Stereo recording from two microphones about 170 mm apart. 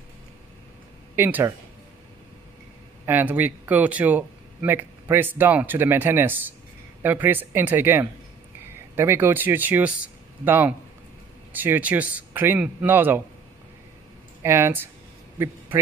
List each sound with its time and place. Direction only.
1.1 s speech: 10° right (ahead or behind)
3.1 s speech: 10° right (ahead or behind)
14.4 s speech: 15° right (ahead or behind)
15.3 s a sound: 15° right (ahead or behind)